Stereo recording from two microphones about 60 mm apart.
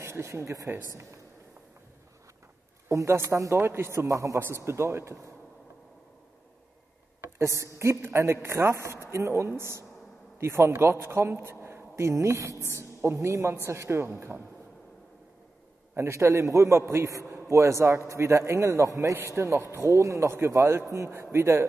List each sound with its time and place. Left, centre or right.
0.0 s a man's voice: right
2.9 s a man's voice: right
3.6 s a man's voice: right
4.6 s a man's voice: right
7.4 s a man's voice: right
16.0 s a man's voice: right